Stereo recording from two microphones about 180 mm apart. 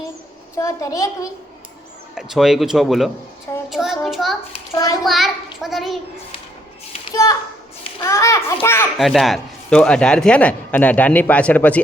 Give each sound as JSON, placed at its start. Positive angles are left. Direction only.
{"t": 0.5, "sound": "a man's voice", "side_deg": 15}
{"t": 2.1, "sound": "speech", "side_deg": 0}
{"t": 4.5, "sound": "a child's voice", "side_deg": 20}
{"t": 5.0, "sound": "speech", "side_deg": 0}
{"t": 7.1, "sound": "a child's voice", "side_deg": 20}
{"t": 9.0, "sound": "a man's voice", "side_deg": 0}